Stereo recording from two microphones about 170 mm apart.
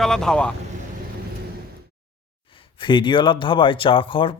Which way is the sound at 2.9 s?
30° left (ahead or behind).